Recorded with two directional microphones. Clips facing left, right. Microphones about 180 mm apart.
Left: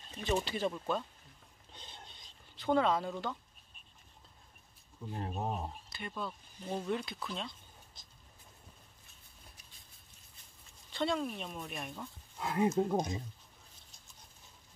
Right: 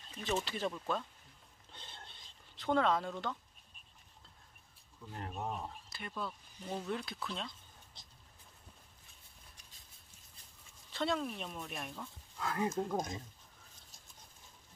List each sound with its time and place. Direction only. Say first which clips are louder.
0.5 s speech: left 3 dB; centre (ahead or behind)
1.7 s a sound: left 1 dB; 15° left (ahead or behind)
2.5 s speech: left 2 dB; centre (ahead or behind)
5.0 s speech: left 5 dB; 20° left (ahead or behind)
5.3 s speech: left 2 dB; 30° left (ahead or behind)
5.9 s speech: left 1 dB; centre (ahead or behind)
10.9 s speech: left 2 dB; centre (ahead or behind)
12.4 s speech: left 5 dB; 25° left (ahead or behind)